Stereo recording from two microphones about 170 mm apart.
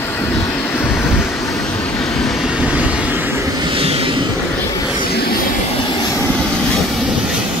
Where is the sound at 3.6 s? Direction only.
35° right (ahead or behind).